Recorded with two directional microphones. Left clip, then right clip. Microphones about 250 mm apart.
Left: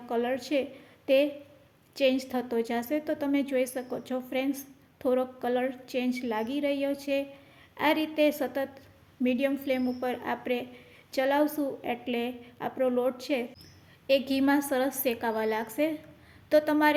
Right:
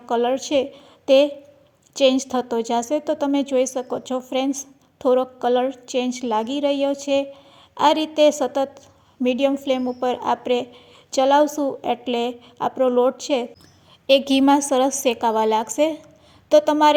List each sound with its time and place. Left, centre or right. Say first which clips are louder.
0.0 s a woman's voice: right 9 dB; right